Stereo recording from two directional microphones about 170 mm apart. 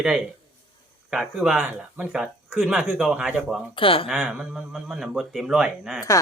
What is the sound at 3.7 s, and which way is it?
Speech, 30° left (ahead or behind).